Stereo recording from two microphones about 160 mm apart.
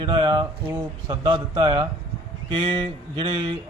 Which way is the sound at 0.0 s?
30° right (ahead or behind).